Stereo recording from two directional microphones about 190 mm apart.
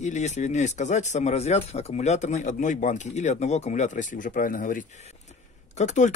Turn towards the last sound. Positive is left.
turn(degrees=40)  # may be behind; listen again after turning